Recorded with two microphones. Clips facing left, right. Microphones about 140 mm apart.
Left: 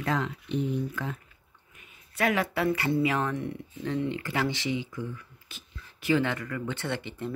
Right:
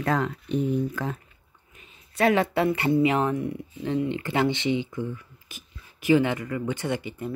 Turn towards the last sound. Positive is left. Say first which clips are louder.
# right 4 dB
turn(degrees=-10)  # may be behind; listen again after turning